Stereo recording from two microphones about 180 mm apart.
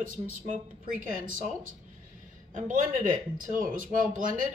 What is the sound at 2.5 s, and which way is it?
Speech, 50° right (ahead or behind).